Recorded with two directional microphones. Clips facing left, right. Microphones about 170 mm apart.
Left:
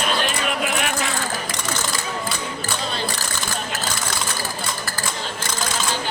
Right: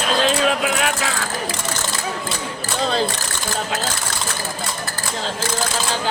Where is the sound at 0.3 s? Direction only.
90° right.